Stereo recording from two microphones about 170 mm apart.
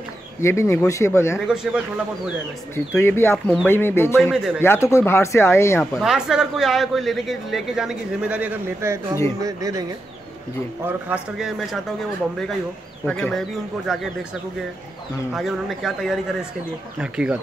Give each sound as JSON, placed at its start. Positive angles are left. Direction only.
{"t": 0.4, "sound": "a man's voice", "side_deg": 15}
{"t": 1.5, "sound": "a man's voice", "side_deg": -5}
{"t": 3.0, "sound": "a man's voice", "side_deg": 15}
{"t": 5.9, "sound": "a man's voice", "side_deg": -5}
{"t": 10.9, "sound": "a man's voice", "side_deg": -5}
{"t": 13.0, "sound": "a man's voice", "side_deg": 5}
{"t": 15.3, "sound": "a man's voice", "side_deg": 0}